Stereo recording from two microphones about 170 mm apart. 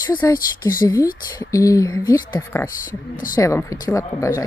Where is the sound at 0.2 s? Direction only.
20° left (ahead or behind).